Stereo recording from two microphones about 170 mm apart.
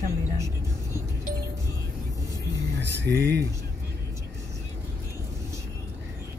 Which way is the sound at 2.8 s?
90° right.